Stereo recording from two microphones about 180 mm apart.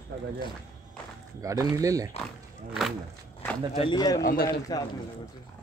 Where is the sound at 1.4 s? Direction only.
20° right (ahead or behind).